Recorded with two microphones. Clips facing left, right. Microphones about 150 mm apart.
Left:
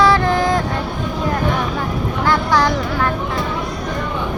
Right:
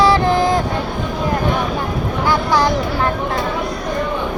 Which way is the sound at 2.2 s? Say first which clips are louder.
Even; 10° right (ahead or behind).